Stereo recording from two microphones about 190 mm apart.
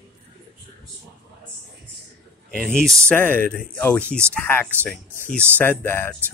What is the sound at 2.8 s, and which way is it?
Speech, 15° right (ahead or behind).